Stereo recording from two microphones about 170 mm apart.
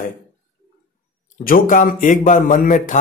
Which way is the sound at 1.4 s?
50° left (ahead or behind).